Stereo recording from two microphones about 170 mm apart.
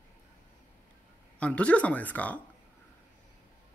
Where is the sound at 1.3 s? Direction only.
5° left (ahead or behind).